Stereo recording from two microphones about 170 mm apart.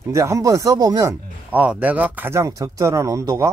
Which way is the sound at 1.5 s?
10° right (ahead or behind).